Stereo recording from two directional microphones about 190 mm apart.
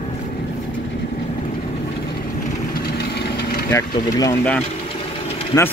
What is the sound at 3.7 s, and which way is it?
Speech, 20° left (ahead or behind).